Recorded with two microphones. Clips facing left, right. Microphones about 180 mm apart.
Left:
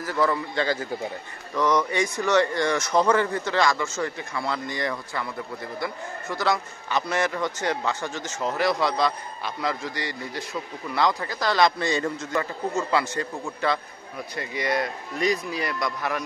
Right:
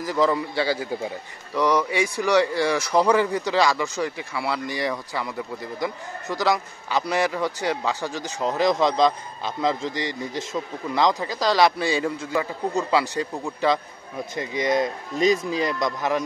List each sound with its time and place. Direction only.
0.0 s a man's voice: 15° right (ahead or behind)